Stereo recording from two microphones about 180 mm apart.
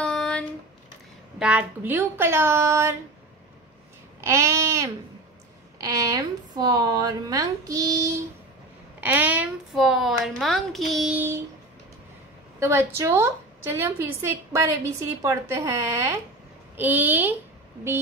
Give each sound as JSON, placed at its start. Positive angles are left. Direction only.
{"t": 0.0, "sound": "a sound", "side_deg": 5}
{"t": 1.4, "sound": "a woman's voice", "side_deg": -5}
{"t": 4.2, "sound": "a woman's voice", "side_deg": -15}
{"t": 9.0, "sound": "a woman's voice", "side_deg": -10}
{"t": 12.5, "sound": "a woman's voice", "side_deg": -15}